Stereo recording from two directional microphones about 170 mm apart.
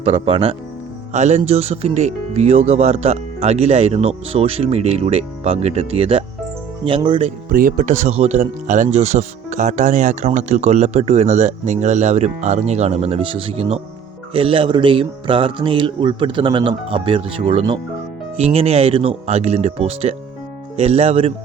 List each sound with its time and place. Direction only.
0.0 s speech: 35° right (ahead or behind)
7.3 s speech: 50° right (ahead or behind)